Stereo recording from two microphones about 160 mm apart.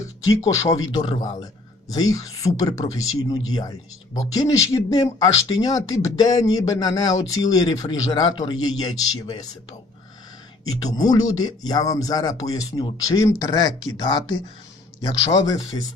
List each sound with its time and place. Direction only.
0.3 s speech: 20° left (ahead or behind)
10.9 s speech: 25° left (ahead or behind)
15.7 s speech: 30° left (ahead or behind)